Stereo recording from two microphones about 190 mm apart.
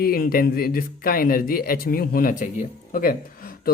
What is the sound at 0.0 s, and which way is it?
Speech, 50° left (ahead or behind).